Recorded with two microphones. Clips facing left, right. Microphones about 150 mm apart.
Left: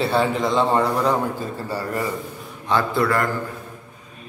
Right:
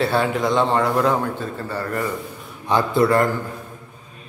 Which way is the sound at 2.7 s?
20° right (ahead or behind).